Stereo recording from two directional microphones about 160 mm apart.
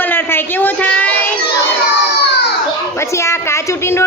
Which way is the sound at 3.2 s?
15° left (ahead or behind).